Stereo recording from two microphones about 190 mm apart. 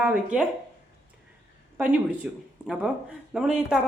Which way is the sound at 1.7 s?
10° right (ahead or behind).